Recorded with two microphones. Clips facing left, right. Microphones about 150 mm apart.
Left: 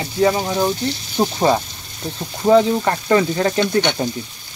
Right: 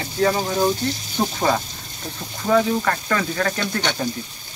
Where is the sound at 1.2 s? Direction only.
25° left (ahead or behind).